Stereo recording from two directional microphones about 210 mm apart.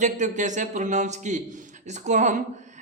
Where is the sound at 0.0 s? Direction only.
35° right (ahead or behind).